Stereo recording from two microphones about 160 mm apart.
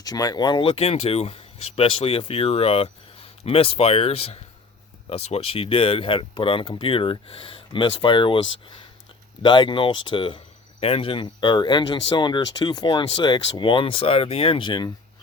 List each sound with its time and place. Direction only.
0.0 s speech: 25° left (ahead or behind)